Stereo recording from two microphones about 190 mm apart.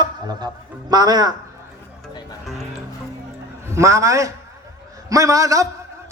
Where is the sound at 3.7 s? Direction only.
15° right (ahead or behind).